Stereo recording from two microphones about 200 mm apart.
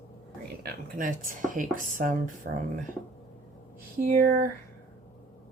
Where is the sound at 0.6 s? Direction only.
45° right (ahead or behind).